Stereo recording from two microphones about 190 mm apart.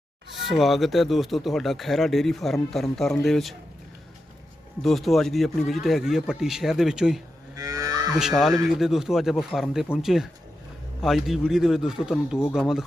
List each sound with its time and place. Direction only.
0.4 s speech: centre (ahead or behind)
4.8 s speech: centre (ahead or behind)
7.5 s cattle: 20° right (ahead or behind)
8.1 s speech: 5° right (ahead or behind)